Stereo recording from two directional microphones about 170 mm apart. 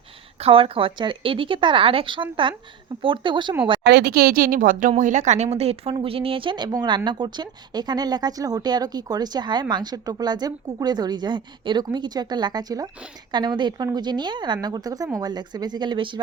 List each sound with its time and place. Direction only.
0.3 s a woman's voice: 35° right (ahead or behind)
3.8 s speech: 70° right (ahead or behind); by 16.2 s 30° right (ahead or behind)